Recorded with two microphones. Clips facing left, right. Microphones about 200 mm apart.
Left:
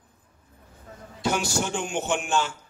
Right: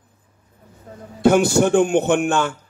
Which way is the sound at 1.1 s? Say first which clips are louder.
Right 12 dB; 55° right (ahead or behind).